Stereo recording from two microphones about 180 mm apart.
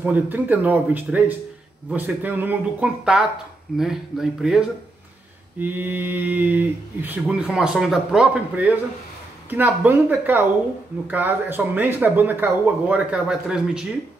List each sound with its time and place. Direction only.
0.0 s speech: 10° right (ahead or behind)